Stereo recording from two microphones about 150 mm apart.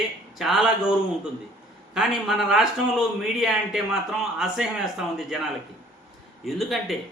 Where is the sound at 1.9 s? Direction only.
Centre (ahead or behind).